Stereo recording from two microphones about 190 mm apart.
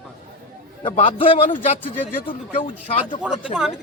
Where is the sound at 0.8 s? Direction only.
25° left (ahead or behind).